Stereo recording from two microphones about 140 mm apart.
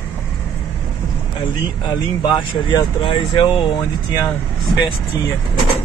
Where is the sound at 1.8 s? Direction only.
35° left (ahead or behind).